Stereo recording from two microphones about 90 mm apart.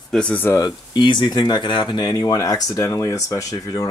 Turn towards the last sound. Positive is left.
turn(degrees=40)  # may be behind; listen again after turning